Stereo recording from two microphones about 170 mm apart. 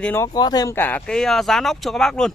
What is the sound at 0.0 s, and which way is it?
Speech, 10° left (ahead or behind).